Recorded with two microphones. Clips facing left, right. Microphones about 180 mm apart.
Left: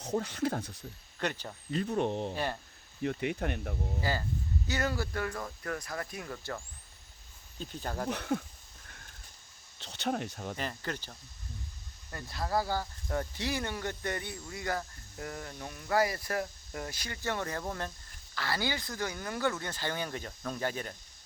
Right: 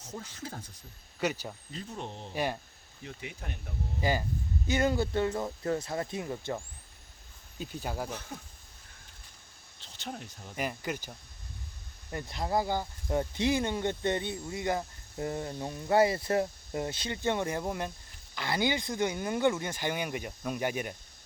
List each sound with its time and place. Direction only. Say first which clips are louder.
0.0 s speech: left 10 dB; 65° left (ahead or behind)
1.2 s speech: right 3 dB; 5° right (ahead or behind)
1.7 s speech: left 12 dB; 65° left (ahead or behind)
2.3 s speech: right 2 dB; 15° right (ahead or behind)
3.0 s speech: left 11 dB; 60° left (ahead or behind)
4.0 s speech: right 5 dB; 15° right (ahead or behind)
7.6 s speech: right 1 dB; 10° right (ahead or behind)
8.1 s speech: left 8 dB; 70° left (ahead or behind)
9.8 s speech: left 8 dB; 70° left (ahead or behind)
10.6 s speech: right 6 dB; 10° right (ahead or behind)
12.1 s speech: right 2 dB; 20° right (ahead or behind)